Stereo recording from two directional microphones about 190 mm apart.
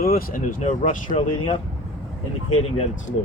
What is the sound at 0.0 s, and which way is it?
Speech, 50° left (ahead or behind).